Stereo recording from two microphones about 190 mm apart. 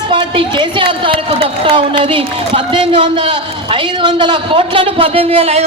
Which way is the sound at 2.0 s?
25° right (ahead or behind).